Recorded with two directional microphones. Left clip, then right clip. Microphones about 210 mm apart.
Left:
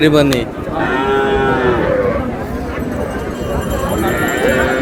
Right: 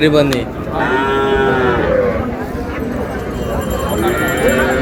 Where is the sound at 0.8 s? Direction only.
45° right (ahead or behind).